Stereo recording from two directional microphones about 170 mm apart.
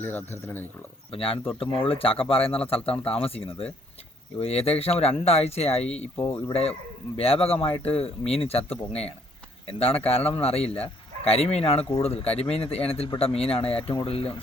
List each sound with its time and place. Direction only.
0.0 s speech: 10° left (ahead or behind)
1.1 s speech: 35° left (ahead or behind)